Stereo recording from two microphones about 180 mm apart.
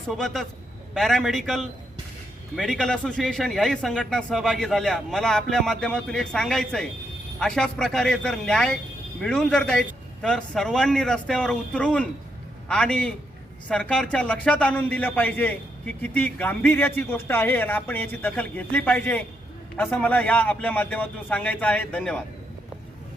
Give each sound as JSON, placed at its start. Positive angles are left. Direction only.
{"t": 0.1, "sound": "a man's voice", "side_deg": 0}